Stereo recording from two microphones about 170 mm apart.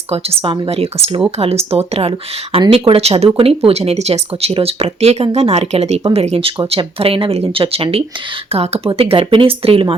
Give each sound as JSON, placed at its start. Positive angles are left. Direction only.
{"t": 0.1, "sound": "speech", "side_deg": -35}